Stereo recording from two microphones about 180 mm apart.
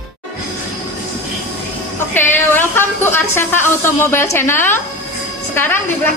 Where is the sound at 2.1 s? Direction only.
10° left (ahead or behind).